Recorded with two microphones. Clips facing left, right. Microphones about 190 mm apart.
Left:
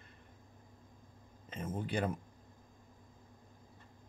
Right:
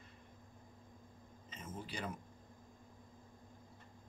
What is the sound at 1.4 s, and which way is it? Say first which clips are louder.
Speech: left 9 dB; 55° left (ahead or behind).